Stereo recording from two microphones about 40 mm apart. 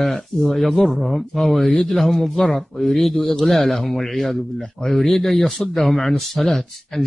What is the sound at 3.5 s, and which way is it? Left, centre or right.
Speech, centre.